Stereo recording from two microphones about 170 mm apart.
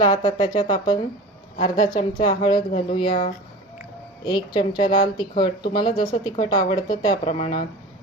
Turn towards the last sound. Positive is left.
turn(degrees=40)  # may be behind; listen again after turning